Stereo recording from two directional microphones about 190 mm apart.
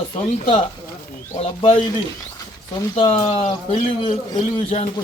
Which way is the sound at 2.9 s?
30° left (ahead or behind).